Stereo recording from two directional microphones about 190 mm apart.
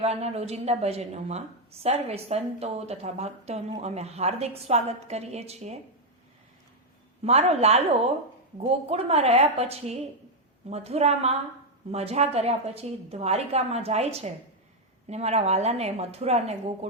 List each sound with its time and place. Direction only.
0.0 s a woman's voice: 35° right (ahead or behind)
7.2 s a woman's voice: 35° right (ahead or behind)